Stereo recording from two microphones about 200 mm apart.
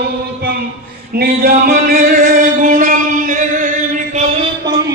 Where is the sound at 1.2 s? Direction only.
50° right (ahead or behind).